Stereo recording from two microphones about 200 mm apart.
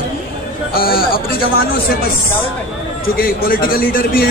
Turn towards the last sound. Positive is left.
turn(degrees=45)  # may be behind; listen again after turning